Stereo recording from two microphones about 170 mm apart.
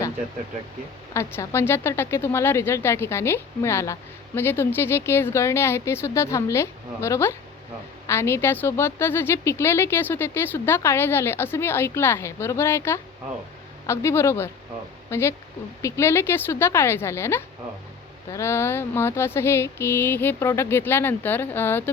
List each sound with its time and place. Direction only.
1.1 s speech: 15° left (ahead or behind)